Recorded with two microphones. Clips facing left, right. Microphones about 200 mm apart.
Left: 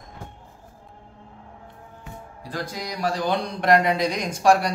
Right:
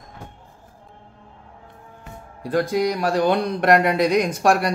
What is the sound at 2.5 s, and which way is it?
Speech, 60° right (ahead or behind).